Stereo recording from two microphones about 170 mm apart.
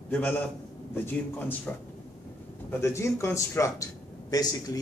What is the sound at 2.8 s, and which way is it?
A man's voice, 15° left (ahead or behind).